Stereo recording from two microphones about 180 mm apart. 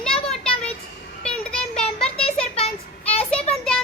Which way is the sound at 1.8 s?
35° left (ahead or behind).